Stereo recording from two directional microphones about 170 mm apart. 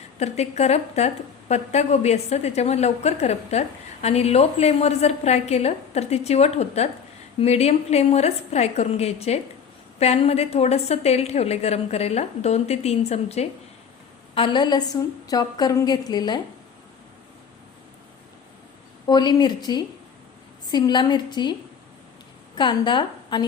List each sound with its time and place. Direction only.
0.2 s a woman's voice: 40° left (ahead or behind); by 16.4 s 25° left (ahead or behind)
19.0 s a woman's voice: 25° left (ahead or behind)
22.5 s a woman's voice: 25° left (ahead or behind)